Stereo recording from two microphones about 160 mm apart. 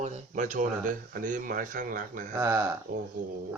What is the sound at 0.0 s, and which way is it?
Speech, 55° right (ahead or behind).